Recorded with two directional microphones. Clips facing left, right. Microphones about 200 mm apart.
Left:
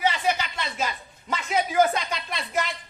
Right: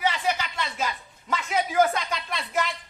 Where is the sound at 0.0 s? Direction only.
20° left (ahead or behind).